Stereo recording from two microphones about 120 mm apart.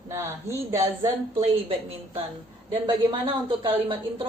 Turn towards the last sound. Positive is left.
turn(degrees=-45)  # may be behind; listen again after turning